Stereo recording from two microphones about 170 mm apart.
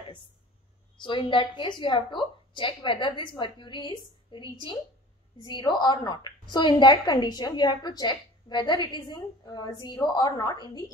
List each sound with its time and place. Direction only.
1.0 s a woman's voice: 30° left (ahead or behind)